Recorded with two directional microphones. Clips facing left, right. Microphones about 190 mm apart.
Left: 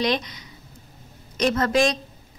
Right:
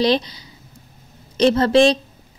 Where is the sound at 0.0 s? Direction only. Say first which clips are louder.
Right 6 dB; 30° right (ahead or behind).